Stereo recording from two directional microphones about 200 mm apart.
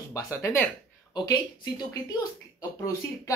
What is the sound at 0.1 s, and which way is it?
Speech, 15° left (ahead or behind).